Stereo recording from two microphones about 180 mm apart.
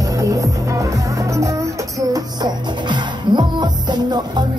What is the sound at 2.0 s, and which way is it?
Music, 20° right (ahead or behind).